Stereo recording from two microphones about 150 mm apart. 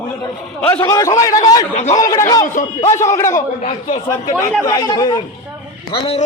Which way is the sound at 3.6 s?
50° left (ahead or behind).